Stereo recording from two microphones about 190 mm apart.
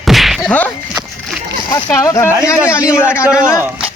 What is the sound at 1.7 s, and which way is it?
Speech, 15° left (ahead or behind).